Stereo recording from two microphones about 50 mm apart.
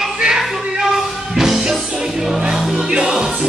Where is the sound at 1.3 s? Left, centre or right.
Centre.